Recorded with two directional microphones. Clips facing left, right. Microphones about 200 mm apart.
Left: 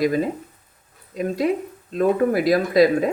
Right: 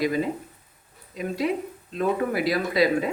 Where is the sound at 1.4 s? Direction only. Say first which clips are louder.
Left 2 dB; 45° left (ahead or behind).